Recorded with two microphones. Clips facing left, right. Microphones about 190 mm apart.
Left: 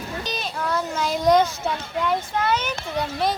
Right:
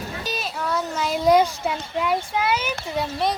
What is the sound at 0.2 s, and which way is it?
Children playing, 5° right (ahead or behind).